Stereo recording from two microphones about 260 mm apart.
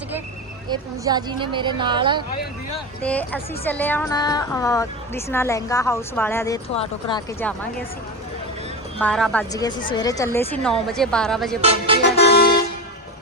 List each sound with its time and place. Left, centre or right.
0.7 s a woman's voice: centre
3.0 s a woman's voice: centre
9.0 s a woman's voice: centre
11.6 s speech: right
12.2 s vehicle: left